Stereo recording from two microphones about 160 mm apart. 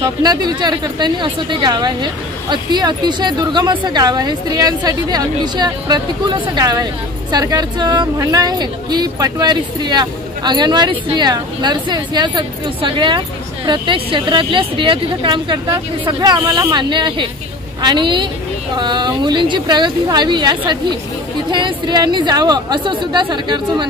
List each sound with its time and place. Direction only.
0.0 s a woman's voice: 25° right (ahead or behind)